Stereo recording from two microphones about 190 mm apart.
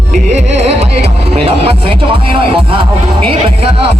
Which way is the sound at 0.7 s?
35° right (ahead or behind).